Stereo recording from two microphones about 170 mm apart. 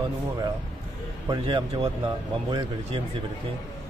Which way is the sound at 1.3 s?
30° right (ahead or behind).